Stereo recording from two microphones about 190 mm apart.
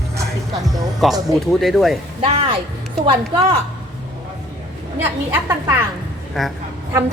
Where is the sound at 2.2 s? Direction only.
30° right (ahead or behind).